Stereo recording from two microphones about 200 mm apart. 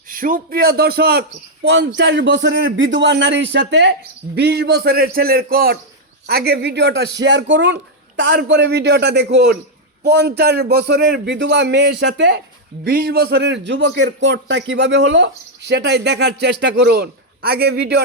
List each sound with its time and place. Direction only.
0.1 s a man's voice: 45° right (ahead or behind); by 12.4 s 60° right (ahead or behind)
12.8 s a man's voice: 45° right (ahead or behind)